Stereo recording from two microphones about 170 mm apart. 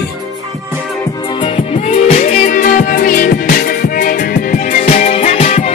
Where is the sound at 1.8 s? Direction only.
40° left (ahead or behind).